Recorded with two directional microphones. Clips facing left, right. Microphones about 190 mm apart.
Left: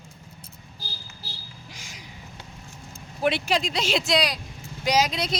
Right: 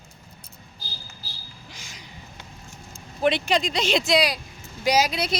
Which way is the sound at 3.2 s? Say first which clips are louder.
Right 2 dB; 5° left (ahead or behind).